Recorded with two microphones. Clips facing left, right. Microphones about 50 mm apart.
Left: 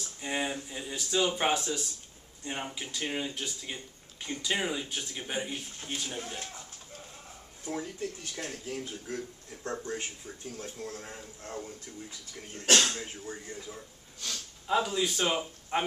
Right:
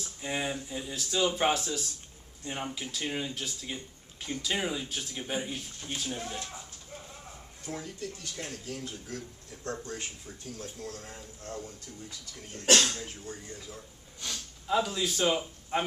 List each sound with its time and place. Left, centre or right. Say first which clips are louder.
0.0 s speech: even; centre
7.6 s speech: left 3 dB; left; by 15.9 s centre